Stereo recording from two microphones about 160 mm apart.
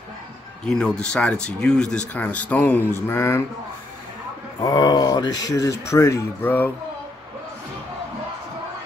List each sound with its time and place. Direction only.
0.7 s speech: 5° left (ahead or behind)
2.9 s mantra: 15° left (ahead or behind)
4.6 s speech: 25° left (ahead or behind)